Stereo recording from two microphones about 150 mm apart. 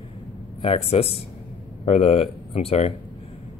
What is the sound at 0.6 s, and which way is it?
Speech, 40° left (ahead or behind).